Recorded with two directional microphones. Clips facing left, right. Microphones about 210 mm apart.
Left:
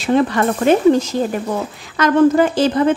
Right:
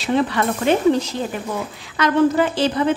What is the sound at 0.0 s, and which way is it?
Speech, 45° left (ahead or behind).